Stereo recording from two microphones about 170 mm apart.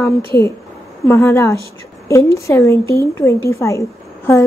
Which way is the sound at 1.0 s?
15° left (ahead or behind).